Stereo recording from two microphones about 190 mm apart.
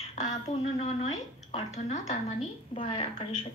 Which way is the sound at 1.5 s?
35° left (ahead or behind).